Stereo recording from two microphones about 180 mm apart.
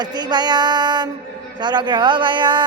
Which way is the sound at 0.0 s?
25° right (ahead or behind).